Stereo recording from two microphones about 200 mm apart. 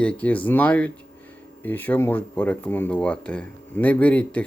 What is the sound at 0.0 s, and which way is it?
Speech, 5° left (ahead or behind).